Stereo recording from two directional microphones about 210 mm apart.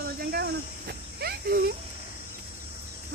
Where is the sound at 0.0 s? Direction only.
45° right (ahead or behind).